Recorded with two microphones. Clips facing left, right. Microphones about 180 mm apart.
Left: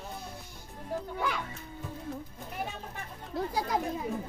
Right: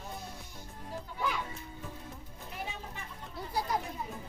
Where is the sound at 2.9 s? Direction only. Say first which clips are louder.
Left 8 dB; 90° left.